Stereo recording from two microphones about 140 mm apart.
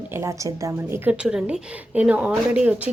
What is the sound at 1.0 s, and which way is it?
A woman's voice, 5° right (ahead or behind).